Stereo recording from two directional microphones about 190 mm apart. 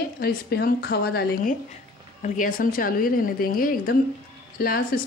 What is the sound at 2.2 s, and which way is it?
Speech, 45° left (ahead or behind).